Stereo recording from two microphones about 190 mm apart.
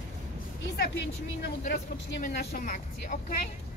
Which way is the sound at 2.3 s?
45° left (ahead or behind).